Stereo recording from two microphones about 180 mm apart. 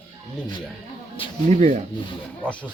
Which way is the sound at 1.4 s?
40° right (ahead or behind).